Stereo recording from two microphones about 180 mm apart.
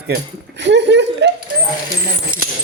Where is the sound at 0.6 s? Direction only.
75° right (ahead or behind).